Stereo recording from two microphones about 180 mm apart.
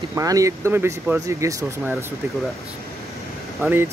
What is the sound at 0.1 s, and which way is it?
Speech, 20° right (ahead or behind).